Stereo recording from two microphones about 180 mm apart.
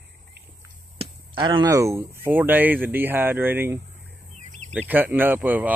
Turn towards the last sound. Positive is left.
turn(degrees=-10)  # may be behind; listen again after turning